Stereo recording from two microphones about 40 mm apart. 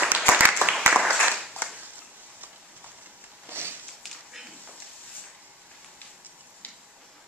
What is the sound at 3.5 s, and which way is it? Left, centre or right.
Sniff, right.